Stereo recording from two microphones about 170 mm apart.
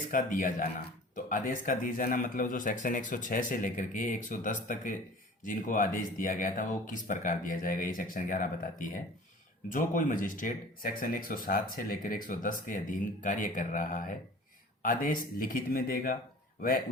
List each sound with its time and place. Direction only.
0.1 s speech: 50° left (ahead or behind)